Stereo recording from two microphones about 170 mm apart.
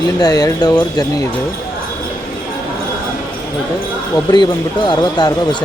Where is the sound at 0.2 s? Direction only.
20° left (ahead or behind).